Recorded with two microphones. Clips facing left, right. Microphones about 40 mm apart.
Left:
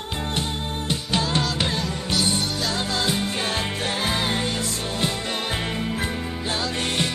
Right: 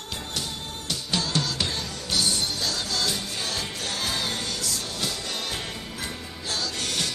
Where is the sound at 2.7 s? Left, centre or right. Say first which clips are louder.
Left 4 dB; left.